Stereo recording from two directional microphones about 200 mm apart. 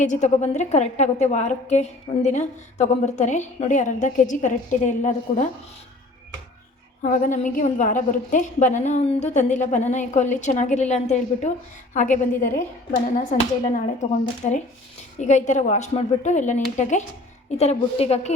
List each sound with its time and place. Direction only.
0.0 s a woman's voice: 35° left (ahead or behind)
7.0 s a woman's voice: 40° left (ahead or behind)